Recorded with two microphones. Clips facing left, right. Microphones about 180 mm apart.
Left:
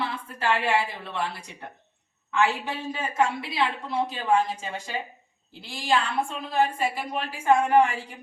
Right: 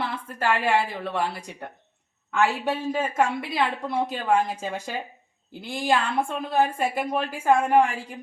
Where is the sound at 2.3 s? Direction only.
45° right (ahead or behind).